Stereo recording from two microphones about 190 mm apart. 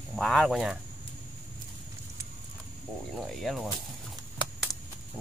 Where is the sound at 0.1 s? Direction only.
Centre (ahead or behind).